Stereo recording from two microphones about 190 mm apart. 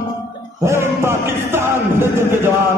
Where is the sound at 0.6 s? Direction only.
15° right (ahead or behind).